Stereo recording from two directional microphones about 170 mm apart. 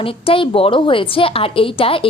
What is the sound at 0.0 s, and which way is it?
A woman's voice, 35° left (ahead or behind).